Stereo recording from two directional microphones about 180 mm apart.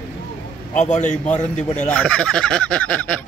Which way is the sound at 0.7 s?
40° left (ahead or behind).